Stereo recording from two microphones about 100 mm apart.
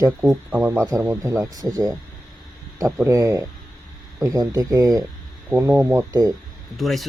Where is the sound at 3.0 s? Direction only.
35° right (ahead or behind).